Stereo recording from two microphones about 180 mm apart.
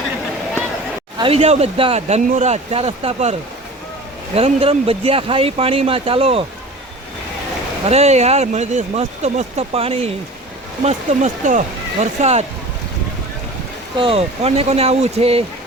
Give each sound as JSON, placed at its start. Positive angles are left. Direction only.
{"t": 1.2, "sound": "speech", "side_deg": -35}
{"t": 4.4, "sound": "speech", "side_deg": -35}
{"t": 7.9, "sound": "speech", "side_deg": -35}
{"t": 13.9, "sound": "speech", "side_deg": -30}